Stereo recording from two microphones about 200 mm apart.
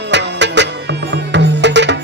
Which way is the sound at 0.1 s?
60° right (ahead or behind).